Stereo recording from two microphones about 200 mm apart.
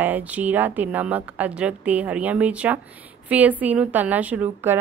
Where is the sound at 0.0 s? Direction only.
10° right (ahead or behind).